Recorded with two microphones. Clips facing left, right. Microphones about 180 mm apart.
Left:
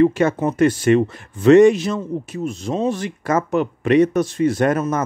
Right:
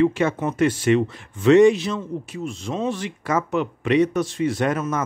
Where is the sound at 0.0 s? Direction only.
45° left (ahead or behind).